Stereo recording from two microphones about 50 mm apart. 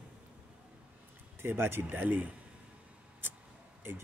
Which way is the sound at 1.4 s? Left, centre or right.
Right.